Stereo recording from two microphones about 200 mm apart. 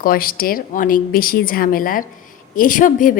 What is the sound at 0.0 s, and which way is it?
A woman's voice, 45° left (ahead or behind).